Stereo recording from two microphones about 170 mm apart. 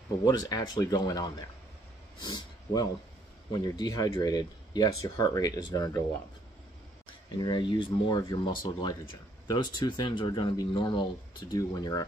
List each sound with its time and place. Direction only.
0.2 s speech: 20° left (ahead or behind)
7.3 s speech: 25° left (ahead or behind)